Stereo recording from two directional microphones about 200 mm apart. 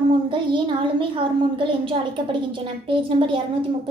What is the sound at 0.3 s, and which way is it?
A woman's voice, 25° right (ahead or behind).